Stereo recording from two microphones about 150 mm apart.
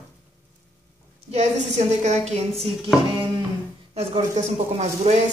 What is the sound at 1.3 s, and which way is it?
Speech, 45° right (ahead or behind).